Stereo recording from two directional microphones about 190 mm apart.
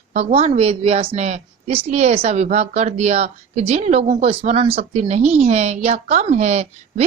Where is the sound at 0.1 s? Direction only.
35° right (ahead or behind).